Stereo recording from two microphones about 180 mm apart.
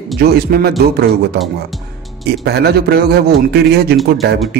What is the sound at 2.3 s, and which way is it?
A man's voice, 65° right (ahead or behind).